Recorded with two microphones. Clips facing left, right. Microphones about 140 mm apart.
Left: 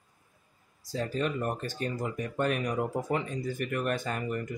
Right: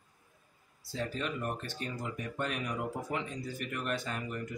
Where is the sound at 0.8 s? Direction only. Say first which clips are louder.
Left 5 dB; 40° left (ahead or behind).